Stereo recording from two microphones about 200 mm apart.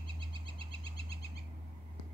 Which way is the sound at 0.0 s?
25° right (ahead or behind).